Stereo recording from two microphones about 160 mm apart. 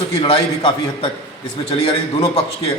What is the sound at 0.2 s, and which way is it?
A man's voice, 35° left (ahead or behind).